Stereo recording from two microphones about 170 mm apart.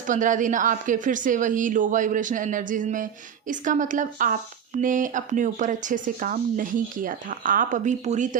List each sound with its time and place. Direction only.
0.0 s a woman's voice: 50° right (ahead or behind)